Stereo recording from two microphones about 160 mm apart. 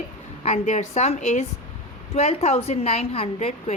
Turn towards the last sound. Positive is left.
turn(degrees=40)  # may be behind; listen again after turning